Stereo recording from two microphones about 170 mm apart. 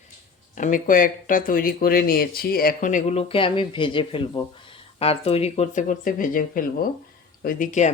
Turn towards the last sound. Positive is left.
turn(degrees=50)  # may be behind; listen again after turning